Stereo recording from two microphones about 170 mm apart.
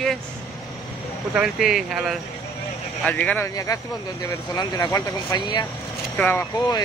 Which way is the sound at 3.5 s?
20° left (ahead or behind).